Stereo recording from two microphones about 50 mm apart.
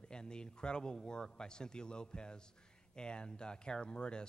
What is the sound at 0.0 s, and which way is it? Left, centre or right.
Speech, centre.